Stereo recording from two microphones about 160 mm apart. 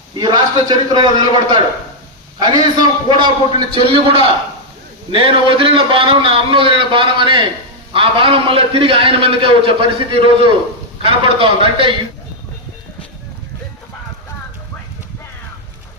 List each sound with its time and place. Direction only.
0.2 s a man's voice: 25° right (ahead or behind)
3.1 s a man's voice: 30° right (ahead or behind)